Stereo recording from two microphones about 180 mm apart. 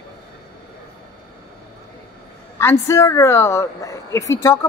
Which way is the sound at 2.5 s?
15° left (ahead or behind).